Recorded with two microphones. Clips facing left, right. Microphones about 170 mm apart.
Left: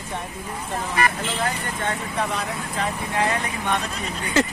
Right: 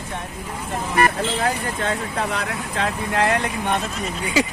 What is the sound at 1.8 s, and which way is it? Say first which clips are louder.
Speech: right 2 dB; 80° right.